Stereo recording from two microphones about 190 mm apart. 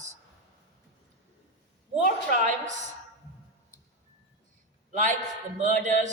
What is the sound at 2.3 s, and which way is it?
Speech, 40° right (ahead or behind).